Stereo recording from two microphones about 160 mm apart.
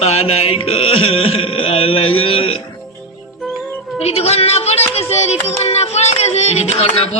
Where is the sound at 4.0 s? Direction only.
40° left (ahead or behind).